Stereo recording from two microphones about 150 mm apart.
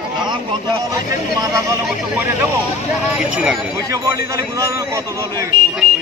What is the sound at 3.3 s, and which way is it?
Speech, 5° right (ahead or behind).